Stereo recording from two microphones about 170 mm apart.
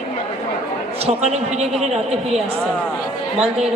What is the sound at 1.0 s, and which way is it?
Speech, 40° right (ahead or behind).